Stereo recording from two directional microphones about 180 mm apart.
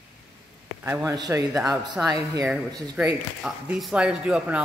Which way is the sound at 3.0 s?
5° right (ahead or behind).